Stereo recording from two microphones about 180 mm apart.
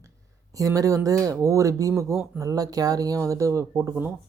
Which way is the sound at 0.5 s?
20° right (ahead or behind).